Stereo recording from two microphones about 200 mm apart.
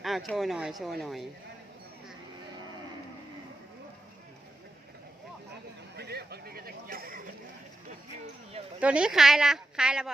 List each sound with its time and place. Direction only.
0.0 s speech: centre (ahead or behind)
6.0 s a sound: 55° right (ahead or behind)
8.8 s speech: 5° right (ahead or behind)